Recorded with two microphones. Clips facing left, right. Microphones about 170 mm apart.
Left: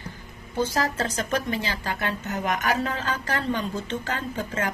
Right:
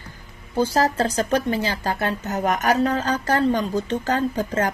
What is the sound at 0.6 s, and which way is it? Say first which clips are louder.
A woman's voice: right 5 dB; 35° right (ahead or behind).